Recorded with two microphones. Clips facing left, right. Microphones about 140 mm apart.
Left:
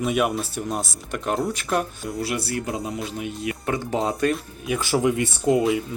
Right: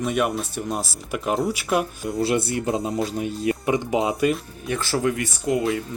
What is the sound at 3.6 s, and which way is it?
Speech, 15° right (ahead or behind).